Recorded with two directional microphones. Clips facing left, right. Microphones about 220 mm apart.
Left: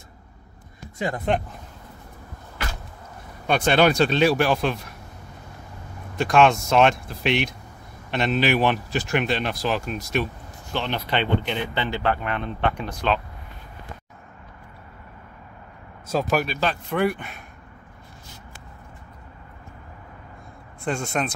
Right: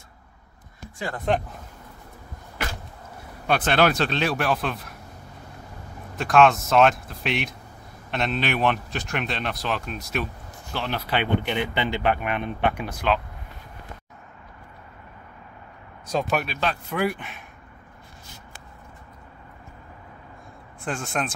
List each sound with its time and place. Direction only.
0.9 s speech: 20° left (ahead or behind)
3.4 s speech: 5° right (ahead or behind)
6.1 s speech: centre (ahead or behind)
16.1 s speech: 5° left (ahead or behind)
20.8 s speech: centre (ahead or behind)